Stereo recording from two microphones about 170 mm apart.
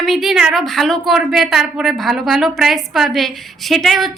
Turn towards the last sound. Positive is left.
turn(degrees=0)  # may be behind; listen again after turning